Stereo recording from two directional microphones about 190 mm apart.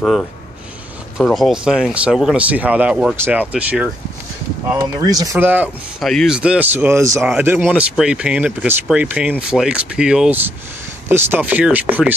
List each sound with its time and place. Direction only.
1.2 s speech: centre (ahead or behind)
4.7 s speech: 20° right (ahead or behind)